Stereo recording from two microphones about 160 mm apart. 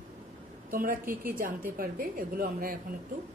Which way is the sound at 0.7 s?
60° right (ahead or behind).